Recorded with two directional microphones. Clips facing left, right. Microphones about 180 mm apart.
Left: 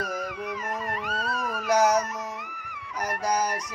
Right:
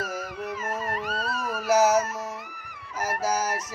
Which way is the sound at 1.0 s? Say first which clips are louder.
Even; 35° right (ahead or behind).